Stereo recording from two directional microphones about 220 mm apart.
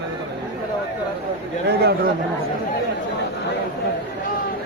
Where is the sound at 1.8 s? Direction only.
45° right (ahead or behind).